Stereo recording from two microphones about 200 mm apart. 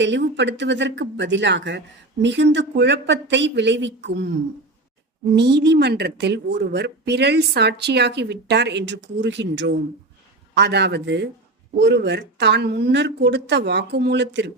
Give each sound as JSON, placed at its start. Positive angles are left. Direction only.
{"t": 0.0, "sound": "a woman's voice", "side_deg": -60}